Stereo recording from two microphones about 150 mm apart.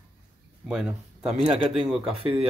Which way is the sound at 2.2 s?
35° right (ahead or behind).